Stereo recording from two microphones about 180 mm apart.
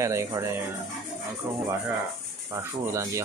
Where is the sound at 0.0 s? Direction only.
15° right (ahead or behind).